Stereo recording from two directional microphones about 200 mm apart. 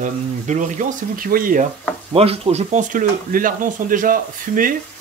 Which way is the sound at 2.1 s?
30° right (ahead or behind).